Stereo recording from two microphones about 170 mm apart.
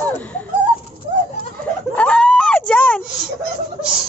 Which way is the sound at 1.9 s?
5° left (ahead or behind).